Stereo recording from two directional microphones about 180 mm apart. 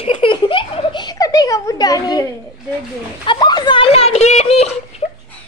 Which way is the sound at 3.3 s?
25° left (ahead or behind).